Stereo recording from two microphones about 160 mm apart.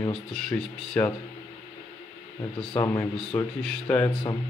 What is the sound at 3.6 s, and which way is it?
Speech, 5° left (ahead or behind).